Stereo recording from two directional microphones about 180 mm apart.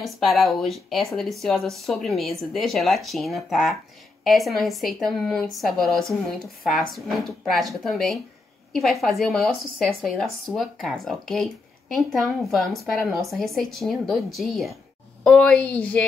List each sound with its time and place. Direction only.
0.0 s a woman's voice: centre (ahead or behind)